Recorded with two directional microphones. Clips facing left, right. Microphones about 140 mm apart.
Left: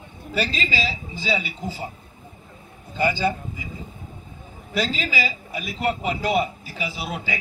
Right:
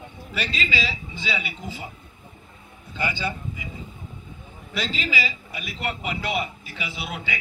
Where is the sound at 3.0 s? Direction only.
45° left (ahead or behind).